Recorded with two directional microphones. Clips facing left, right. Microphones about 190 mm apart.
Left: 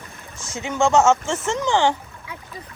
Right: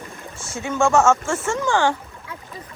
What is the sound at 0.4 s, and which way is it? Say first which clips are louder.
Speech: even; 20° left (ahead or behind).